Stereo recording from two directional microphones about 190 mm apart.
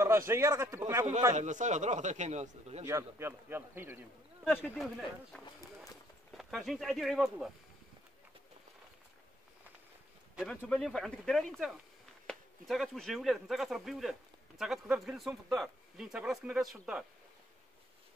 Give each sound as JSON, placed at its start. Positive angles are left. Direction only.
{"t": 0.3, "sound": "speech", "side_deg": -15}
{"t": 1.3, "sound": "speech", "side_deg": -40}
{"t": 2.8, "sound": "speech", "side_deg": -15}
{"t": 4.5, "sound": "speech", "side_deg": 0}
{"t": 10.3, "sound": "speech", "side_deg": 5}